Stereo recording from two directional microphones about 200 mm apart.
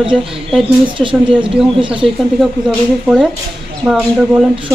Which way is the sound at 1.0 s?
25° right (ahead or behind).